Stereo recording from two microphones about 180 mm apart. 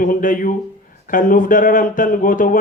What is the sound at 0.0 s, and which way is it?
Speech, 50° left (ahead or behind).